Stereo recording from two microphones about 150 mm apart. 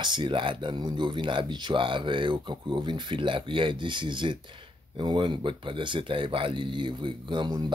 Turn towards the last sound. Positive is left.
turn(degrees=-30)  # may be behind; listen again after turning